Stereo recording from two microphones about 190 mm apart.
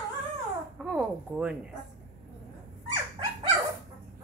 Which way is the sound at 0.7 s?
5° right (ahead or behind).